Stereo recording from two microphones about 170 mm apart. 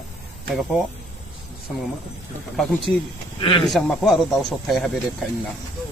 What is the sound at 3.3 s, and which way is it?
Speech, 30° left (ahead or behind).